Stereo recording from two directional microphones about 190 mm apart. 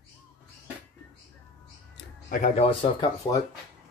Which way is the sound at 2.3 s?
35° left (ahead or behind).